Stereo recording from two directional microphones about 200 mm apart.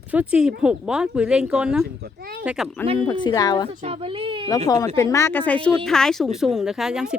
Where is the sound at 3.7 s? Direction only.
30° right (ahead or behind).